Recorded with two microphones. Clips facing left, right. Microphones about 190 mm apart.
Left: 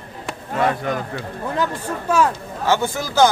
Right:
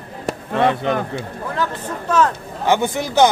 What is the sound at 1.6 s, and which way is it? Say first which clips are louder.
Speech: even; 10° left (ahead or behind).